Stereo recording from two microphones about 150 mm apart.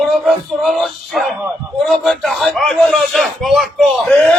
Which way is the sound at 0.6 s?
Centre (ahead or behind).